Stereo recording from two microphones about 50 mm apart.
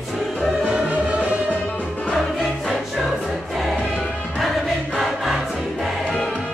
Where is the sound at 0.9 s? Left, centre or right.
Right.